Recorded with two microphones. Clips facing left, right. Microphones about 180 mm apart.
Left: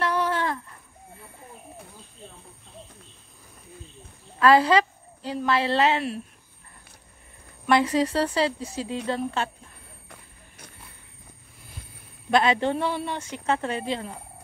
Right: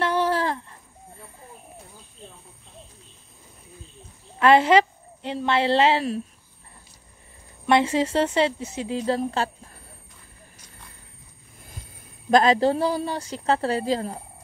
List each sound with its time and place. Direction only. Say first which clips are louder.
0.0 s a sound: right 2 dB; 30° right (ahead or behind)
4.4 s a woman's voice: right 2 dB; 25° right (ahead or behind)
7.6 s a woman's voice: right 1 dB; 25° right (ahead or behind)
12.3 s a woman's voice: right 4 dB; 40° right (ahead or behind)